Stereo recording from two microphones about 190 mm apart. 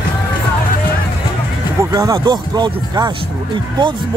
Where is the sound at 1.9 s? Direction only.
20° right (ahead or behind).